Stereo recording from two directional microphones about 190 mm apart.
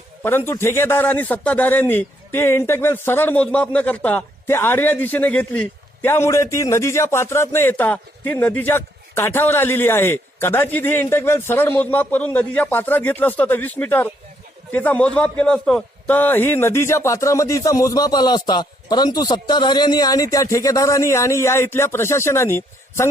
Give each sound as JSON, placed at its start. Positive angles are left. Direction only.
{"t": 0.2, "sound": "a man's voice", "side_deg": 10}